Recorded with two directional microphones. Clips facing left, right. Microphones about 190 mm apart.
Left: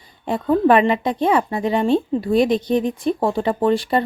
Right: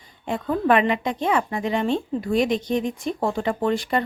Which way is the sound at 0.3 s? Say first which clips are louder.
Left 5 dB; 35° left (ahead or behind).